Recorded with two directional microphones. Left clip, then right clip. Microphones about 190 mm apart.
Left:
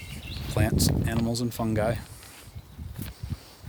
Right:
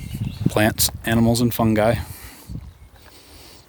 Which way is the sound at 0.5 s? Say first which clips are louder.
Right 8 dB; 55° right (ahead or behind).